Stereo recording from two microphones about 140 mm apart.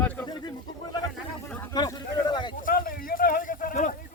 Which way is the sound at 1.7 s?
30° left (ahead or behind).